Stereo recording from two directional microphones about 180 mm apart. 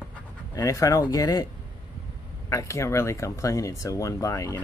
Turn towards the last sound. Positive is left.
turn(degrees=20)  # may be behind; listen again after turning